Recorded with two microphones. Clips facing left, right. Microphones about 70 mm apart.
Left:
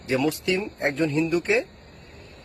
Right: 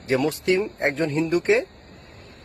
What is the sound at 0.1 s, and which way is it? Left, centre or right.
A man's voice, right.